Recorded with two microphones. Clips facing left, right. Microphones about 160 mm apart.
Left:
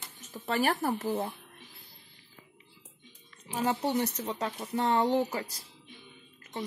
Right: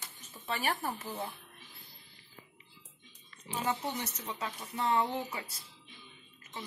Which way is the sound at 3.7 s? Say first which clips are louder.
Left 7 dB; 35° left (ahead or behind).